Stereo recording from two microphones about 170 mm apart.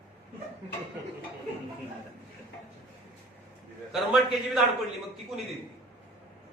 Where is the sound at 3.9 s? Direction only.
Centre (ahead or behind).